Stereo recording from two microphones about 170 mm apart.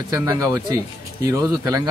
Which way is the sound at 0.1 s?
20° right (ahead or behind).